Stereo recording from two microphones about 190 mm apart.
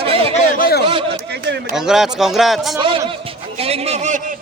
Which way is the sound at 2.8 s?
30° right (ahead or behind).